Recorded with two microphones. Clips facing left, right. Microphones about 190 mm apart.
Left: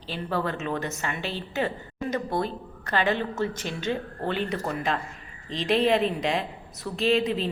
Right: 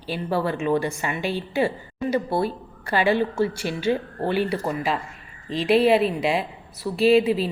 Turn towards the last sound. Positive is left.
turn(degrees=-10)  # may be behind; listen again after turning